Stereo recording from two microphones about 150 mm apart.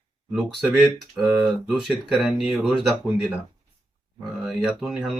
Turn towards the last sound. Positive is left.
turn(degrees=-5)  # may be behind; listen again after turning